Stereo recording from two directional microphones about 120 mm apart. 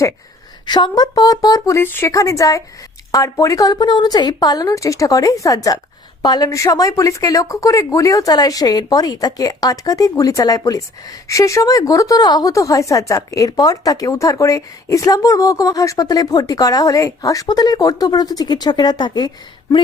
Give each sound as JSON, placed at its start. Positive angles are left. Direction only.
{"t": 0.6, "sound": "a woman's voice", "side_deg": 35}